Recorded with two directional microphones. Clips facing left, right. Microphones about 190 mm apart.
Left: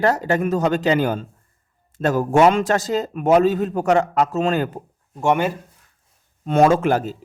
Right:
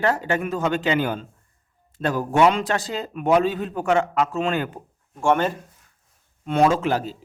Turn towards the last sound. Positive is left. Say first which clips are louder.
# left 4 dB
turn(degrees=50)  # may be behind; listen again after turning